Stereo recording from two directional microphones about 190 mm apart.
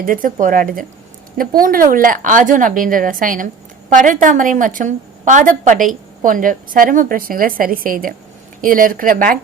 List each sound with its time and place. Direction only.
0.0 s a woman's voice: 45° right (ahead or behind)